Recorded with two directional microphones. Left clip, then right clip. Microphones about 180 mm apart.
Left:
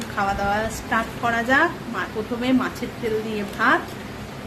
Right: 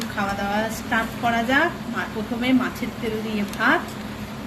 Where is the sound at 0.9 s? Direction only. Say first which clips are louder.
Even; 30° left (ahead or behind).